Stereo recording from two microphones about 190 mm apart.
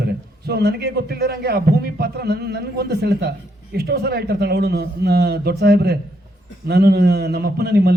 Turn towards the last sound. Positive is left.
turn(degrees=-60)  # may be behind; listen again after turning